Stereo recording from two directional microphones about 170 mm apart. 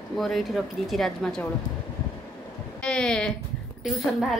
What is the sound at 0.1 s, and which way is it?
A woman's voice, centre (ahead or behind).